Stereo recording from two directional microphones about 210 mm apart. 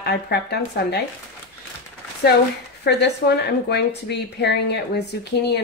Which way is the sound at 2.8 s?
55° left (ahead or behind).